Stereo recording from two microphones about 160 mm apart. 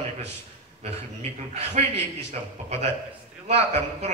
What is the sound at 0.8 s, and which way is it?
A man's voice, 40° right (ahead or behind).